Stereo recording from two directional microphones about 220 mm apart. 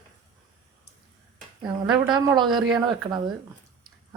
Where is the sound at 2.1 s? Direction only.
20° right (ahead or behind).